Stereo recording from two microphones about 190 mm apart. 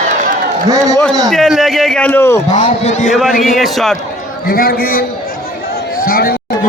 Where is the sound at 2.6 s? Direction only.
40° left (ahead or behind).